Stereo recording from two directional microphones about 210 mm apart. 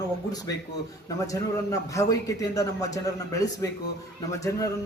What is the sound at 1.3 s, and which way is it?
A man's voice, 15° left (ahead or behind).